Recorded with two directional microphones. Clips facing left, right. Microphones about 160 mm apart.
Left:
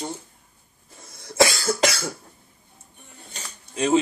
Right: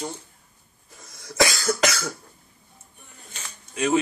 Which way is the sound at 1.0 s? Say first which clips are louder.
Left 3 dB; 25° left (ahead or behind).